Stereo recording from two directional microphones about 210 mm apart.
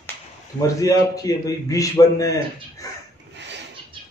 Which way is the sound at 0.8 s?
15° left (ahead or behind).